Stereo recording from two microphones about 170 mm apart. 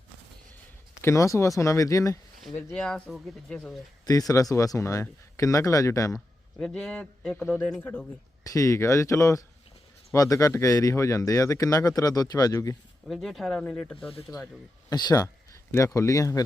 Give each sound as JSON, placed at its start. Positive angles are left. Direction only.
{"t": 1.0, "sound": "speech", "side_deg": 20}
{"t": 2.6, "sound": "a man's voice", "side_deg": 5}
{"t": 4.0, "sound": "speech", "side_deg": 20}
{"t": 6.6, "sound": "a man's voice", "side_deg": 5}
{"t": 13.1, "sound": "a man's voice", "side_deg": 0}
{"t": 14.8, "sound": "speech", "side_deg": 25}